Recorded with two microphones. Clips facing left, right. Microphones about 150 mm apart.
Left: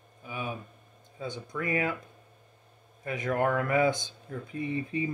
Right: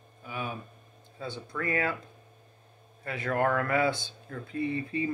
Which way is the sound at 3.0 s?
15° left (ahead or behind).